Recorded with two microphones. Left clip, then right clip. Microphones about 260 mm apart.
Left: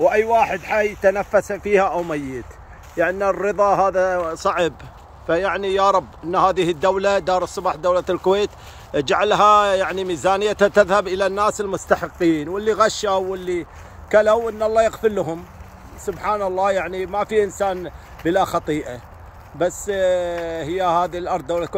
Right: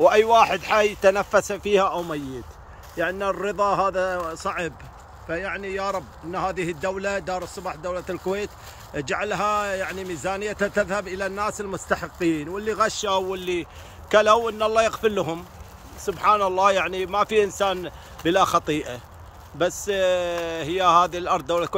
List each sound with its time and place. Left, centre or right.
0.0 s speech: centre
3.0 s speech: centre
5.3 s speech: left
7.4 s speech: centre
11.5 s speech: centre